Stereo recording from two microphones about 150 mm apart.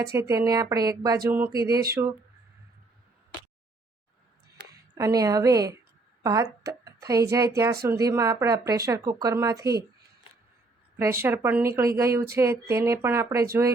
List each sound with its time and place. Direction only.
0.2 s speech: 20° right (ahead or behind)
4.9 s speech: 20° right (ahead or behind)
10.9 s speech: 15° right (ahead or behind)